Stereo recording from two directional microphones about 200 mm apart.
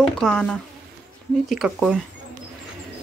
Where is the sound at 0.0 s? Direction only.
5° left (ahead or behind).